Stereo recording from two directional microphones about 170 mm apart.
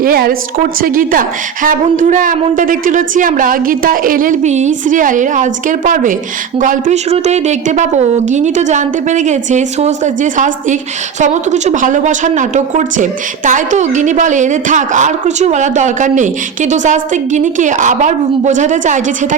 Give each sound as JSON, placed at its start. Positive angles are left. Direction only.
{"t": 0.0, "sound": "a woman's voice", "side_deg": -60}